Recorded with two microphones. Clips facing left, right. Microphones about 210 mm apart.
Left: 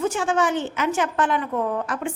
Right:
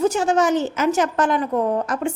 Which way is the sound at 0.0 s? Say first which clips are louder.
Right 4 dB; 40° right (ahead or behind).